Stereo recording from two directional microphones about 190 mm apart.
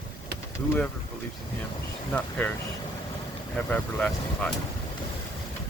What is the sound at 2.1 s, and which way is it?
Speech, 10° left (ahead or behind).